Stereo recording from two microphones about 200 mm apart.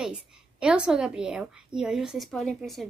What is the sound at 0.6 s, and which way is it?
A woman's voice, 5° right (ahead or behind).